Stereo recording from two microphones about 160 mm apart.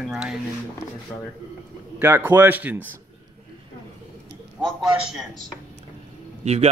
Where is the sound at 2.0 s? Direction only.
15° right (ahead or behind).